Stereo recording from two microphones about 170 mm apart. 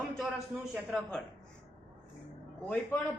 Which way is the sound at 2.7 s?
10° left (ahead or behind).